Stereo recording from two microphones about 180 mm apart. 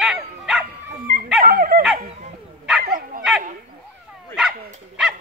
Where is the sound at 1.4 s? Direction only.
55° right (ahead or behind).